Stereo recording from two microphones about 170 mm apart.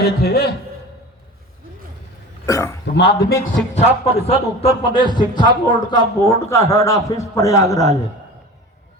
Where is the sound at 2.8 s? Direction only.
75° left (ahead or behind).